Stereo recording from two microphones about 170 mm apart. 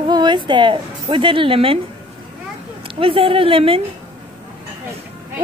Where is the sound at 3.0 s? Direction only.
30° right (ahead or behind).